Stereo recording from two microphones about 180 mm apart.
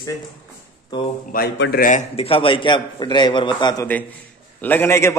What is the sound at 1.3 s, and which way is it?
A man's voice, 60° left (ahead or behind).